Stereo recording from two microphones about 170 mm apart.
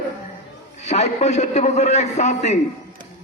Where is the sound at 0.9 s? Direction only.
40° left (ahead or behind).